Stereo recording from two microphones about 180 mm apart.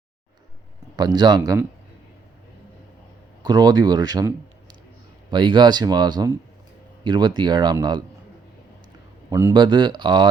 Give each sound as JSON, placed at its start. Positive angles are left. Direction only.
{"t": 0.9, "sound": "speech", "side_deg": -20}
{"t": 3.4, "sound": "speech", "side_deg": -20}
{"t": 9.3, "sound": "speech", "side_deg": -20}